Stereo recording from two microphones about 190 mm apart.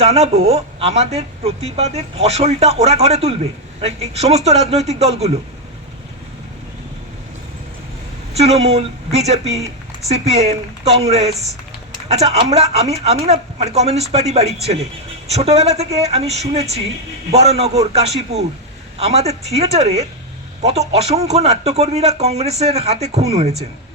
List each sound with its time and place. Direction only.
0.0 s a woman's voice: 35° right (ahead or behind)
8.3 s a woman's voice: 35° right (ahead or behind)